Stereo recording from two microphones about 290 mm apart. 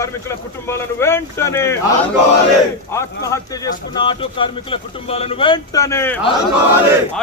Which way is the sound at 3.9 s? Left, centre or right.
Centre.